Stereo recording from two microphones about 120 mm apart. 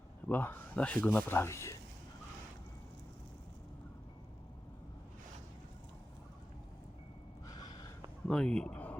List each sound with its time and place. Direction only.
0.3 s speech: 15° left (ahead or behind)
8.3 s speech: 10° left (ahead or behind)